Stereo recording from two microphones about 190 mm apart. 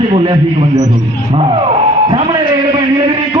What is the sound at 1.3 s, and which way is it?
A man's voice, 30° right (ahead or behind).